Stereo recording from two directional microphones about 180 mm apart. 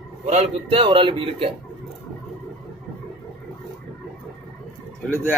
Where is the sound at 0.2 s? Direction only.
35° right (ahead or behind).